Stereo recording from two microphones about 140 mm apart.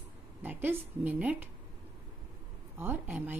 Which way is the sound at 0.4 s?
15° right (ahead or behind).